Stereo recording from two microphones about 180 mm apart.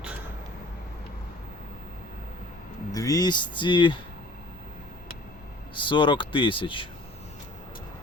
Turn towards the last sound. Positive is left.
turn(degrees=30)  # may be behind; listen again after turning